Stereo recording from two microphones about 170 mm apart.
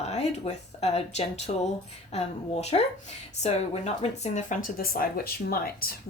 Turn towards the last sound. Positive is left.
turn(degrees=60)  # may be behind; listen again after turning